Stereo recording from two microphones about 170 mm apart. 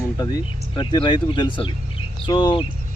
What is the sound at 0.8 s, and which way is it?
Speech, 25° left (ahead or behind).